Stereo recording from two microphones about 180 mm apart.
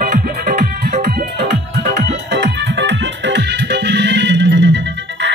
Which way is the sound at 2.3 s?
80° right.